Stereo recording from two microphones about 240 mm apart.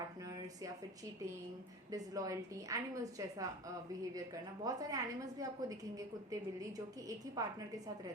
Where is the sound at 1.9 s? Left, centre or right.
Centre.